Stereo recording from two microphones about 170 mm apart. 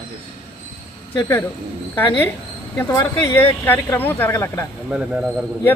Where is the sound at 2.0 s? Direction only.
10° left (ahead or behind).